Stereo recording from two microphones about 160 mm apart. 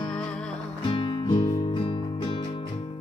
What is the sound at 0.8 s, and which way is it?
Music, 35° left (ahead or behind).